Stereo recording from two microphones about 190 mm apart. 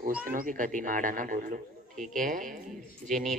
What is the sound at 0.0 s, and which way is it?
Speech, 50° right (ahead or behind).